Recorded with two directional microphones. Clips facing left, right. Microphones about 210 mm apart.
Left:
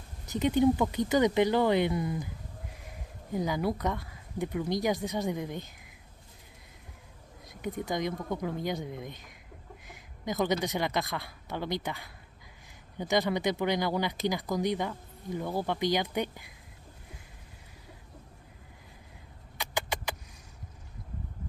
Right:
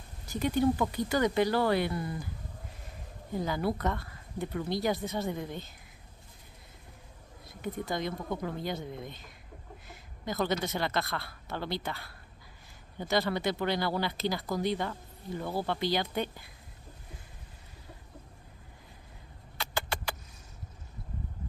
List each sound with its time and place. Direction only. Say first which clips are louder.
0.3 s speech: left 3 dB; 20° left (ahead or behind)
3.3 s speech: left 1 dB; 15° left (ahead or behind)
7.4 s speech: left 1 dB; 15° left (ahead or behind)
19.5 s a sound: left 1 dB; 15° left (ahead or behind)